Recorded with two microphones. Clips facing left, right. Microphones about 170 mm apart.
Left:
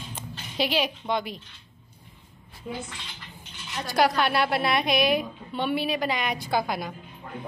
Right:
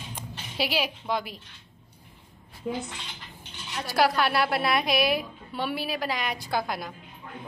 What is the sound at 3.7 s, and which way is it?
A woman's voice, 5° right (ahead or behind).